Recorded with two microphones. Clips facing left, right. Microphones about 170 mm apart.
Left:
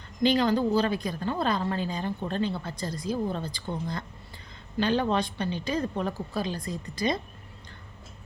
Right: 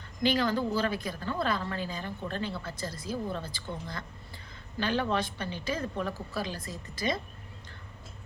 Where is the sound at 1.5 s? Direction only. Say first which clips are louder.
Left 5 dB; 20° left (ahead or behind).